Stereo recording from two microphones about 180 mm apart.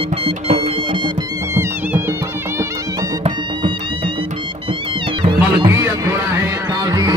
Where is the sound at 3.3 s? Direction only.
30° right (ahead or behind).